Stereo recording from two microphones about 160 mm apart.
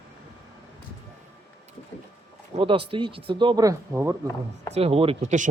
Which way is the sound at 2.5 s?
35° right (ahead or behind).